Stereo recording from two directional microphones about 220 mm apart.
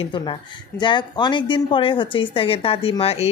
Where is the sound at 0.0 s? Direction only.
20° left (ahead or behind).